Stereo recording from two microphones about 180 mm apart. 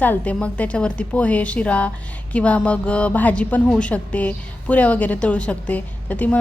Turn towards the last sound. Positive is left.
turn(degrees=10)  # may be behind; listen again after turning